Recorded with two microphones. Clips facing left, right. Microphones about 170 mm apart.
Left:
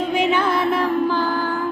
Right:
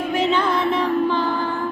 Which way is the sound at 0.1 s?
10° left (ahead or behind).